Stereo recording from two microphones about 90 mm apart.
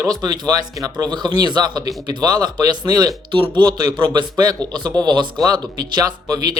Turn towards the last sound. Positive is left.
turn(degrees=-50)  # may be behind; listen again after turning